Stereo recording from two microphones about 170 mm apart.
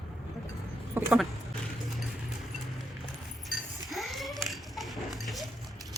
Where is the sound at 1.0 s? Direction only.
10° right (ahead or behind).